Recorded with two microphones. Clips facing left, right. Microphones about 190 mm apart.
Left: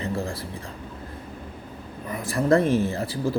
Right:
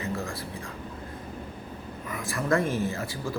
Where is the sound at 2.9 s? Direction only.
35° left (ahead or behind).